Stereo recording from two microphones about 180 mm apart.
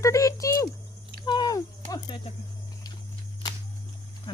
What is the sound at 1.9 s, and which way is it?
Speech, 25° left (ahead or behind).